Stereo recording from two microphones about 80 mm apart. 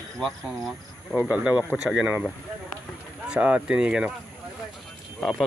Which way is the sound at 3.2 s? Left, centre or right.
Centre.